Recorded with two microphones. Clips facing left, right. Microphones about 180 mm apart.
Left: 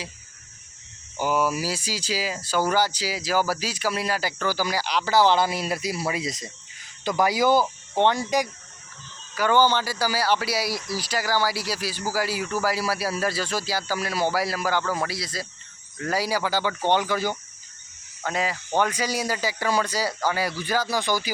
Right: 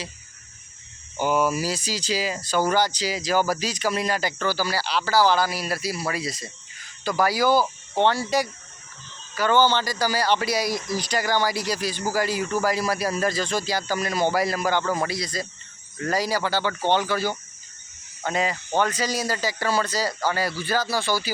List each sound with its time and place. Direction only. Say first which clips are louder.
1.2 s speech: right 2 dB; 5° left (ahead or behind)
18.2 s speech: right 2 dB; centre (ahead or behind)